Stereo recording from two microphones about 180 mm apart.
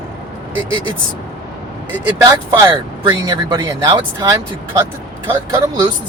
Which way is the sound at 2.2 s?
25° right (ahead or behind).